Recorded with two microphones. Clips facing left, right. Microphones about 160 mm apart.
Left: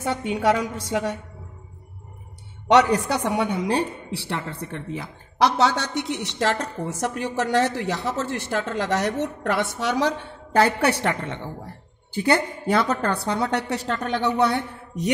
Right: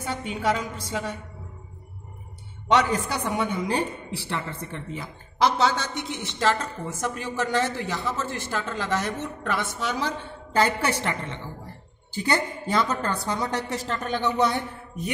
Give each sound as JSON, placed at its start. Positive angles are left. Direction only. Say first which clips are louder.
{"t": 0.0, "sound": "a woman's voice", "louder": "left 5 dB", "side_deg": 70}
{"t": 2.7, "sound": "a woman's voice", "louder": "left 5 dB", "side_deg": 75}